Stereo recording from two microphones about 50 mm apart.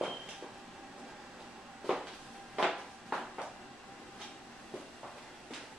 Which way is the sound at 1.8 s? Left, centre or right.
Centre.